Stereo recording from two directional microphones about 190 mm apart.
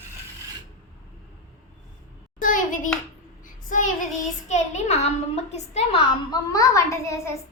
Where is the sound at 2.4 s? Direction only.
45° left (ahead or behind).